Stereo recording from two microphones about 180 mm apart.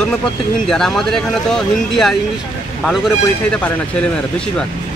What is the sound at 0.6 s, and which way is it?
Speech, 5° left (ahead or behind).